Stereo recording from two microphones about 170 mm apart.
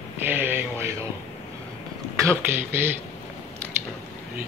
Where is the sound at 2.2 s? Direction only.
15° right (ahead or behind).